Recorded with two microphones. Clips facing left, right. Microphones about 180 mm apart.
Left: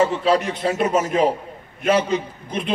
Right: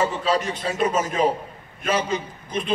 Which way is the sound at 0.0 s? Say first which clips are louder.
Left 4 dB; 60° left (ahead or behind).